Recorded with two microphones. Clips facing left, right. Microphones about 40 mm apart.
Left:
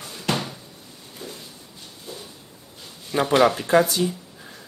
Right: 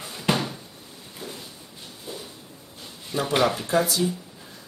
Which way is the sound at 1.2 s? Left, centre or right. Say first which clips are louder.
Even; centre.